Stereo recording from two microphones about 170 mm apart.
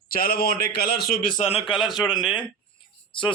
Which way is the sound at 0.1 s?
60° left (ahead or behind).